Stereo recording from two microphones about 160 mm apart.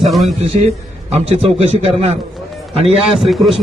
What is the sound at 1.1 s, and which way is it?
A man's voice, 40° right (ahead or behind).